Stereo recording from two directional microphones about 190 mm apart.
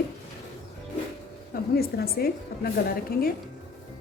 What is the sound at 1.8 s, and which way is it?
A woman's voice, 55° left (ahead or behind).